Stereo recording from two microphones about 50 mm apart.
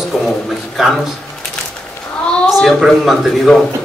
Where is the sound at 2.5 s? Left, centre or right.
Centre.